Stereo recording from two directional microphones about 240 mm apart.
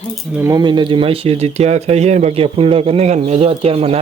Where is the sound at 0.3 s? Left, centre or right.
Centre.